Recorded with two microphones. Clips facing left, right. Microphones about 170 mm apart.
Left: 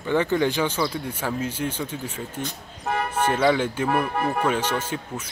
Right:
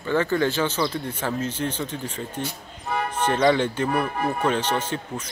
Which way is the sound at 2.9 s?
70° left (ahead or behind).